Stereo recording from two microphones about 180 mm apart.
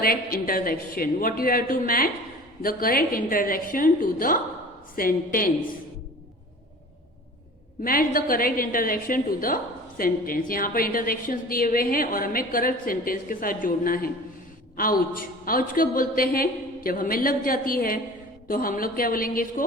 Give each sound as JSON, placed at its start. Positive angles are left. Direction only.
{"t": 0.0, "sound": "a woman's voice", "side_deg": 55}
{"t": 7.9, "sound": "a woman's voice", "side_deg": 50}